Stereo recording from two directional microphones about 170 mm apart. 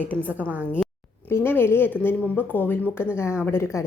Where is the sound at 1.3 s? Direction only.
15° left (ahead or behind).